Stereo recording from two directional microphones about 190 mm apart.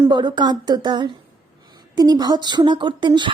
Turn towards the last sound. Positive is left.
turn(degrees=-25)  # may be behind; listen again after turning